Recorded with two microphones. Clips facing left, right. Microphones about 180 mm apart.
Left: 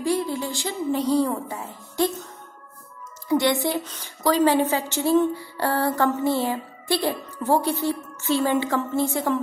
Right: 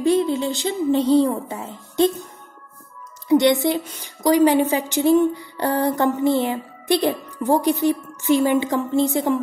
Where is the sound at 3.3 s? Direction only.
20° right (ahead or behind).